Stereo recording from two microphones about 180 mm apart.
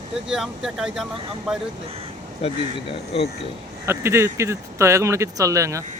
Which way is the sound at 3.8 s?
15° right (ahead or behind).